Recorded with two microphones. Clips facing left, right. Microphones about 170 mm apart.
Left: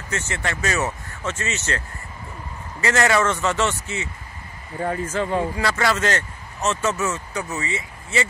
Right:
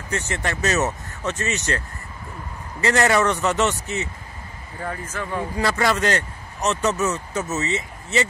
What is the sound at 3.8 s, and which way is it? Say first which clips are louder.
Speech: right 2 dB; 15° left (ahead or behind).